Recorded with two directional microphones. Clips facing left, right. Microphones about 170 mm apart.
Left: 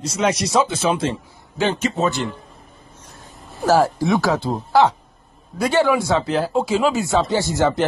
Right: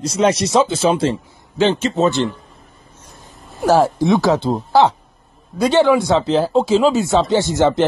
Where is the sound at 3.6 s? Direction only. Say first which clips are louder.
Right 2 dB; 20° right (ahead or behind).